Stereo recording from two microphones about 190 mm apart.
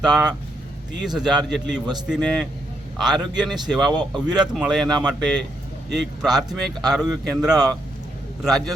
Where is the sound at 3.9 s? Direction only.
20° right (ahead or behind).